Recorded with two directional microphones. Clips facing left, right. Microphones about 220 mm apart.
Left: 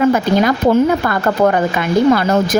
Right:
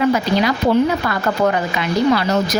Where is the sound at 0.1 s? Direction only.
50° left (ahead or behind).